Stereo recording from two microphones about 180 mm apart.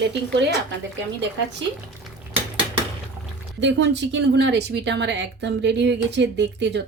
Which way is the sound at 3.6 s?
80° right.